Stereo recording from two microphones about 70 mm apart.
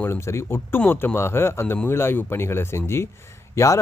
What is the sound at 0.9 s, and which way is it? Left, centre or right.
Speech, left.